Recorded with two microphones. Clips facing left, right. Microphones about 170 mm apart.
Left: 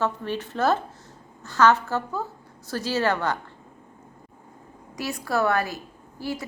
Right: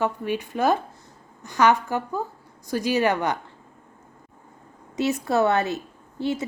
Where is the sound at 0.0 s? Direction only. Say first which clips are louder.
Right 2 dB; 15° right (ahead or behind).